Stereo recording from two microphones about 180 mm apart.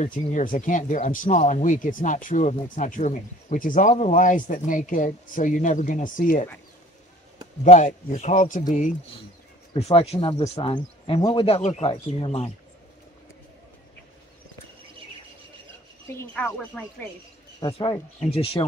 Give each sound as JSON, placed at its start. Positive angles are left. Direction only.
{"t": 0.0, "sound": "speech", "side_deg": 45}
{"t": 7.6, "sound": "speech", "side_deg": 40}
{"t": 11.4, "sound": "speech", "side_deg": 35}
{"t": 16.2, "sound": "speech", "side_deg": 10}
{"t": 17.6, "sound": "speech", "side_deg": 30}